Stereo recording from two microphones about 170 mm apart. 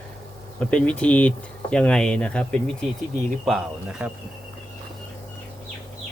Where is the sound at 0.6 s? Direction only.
5° left (ahead or behind).